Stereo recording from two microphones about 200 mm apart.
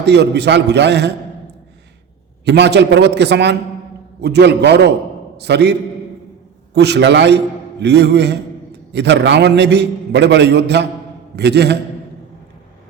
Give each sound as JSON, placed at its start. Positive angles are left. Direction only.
{"t": 0.0, "sound": "a man's voice", "side_deg": -55}
{"t": 2.4, "sound": "a man's voice", "side_deg": -55}
{"t": 6.7, "sound": "a man's voice", "side_deg": -60}